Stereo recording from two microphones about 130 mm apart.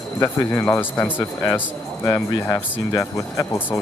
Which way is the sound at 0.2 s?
15° left (ahead or behind).